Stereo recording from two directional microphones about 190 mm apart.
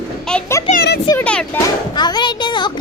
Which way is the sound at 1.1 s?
10° left (ahead or behind).